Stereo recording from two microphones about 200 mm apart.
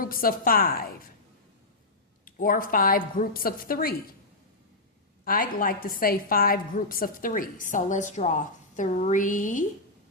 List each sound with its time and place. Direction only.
0.0 s a woman's voice: 45° left (ahead or behind)
2.2 s a woman's voice: 45° left (ahead or behind)
5.2 s a woman's voice: 45° left (ahead or behind)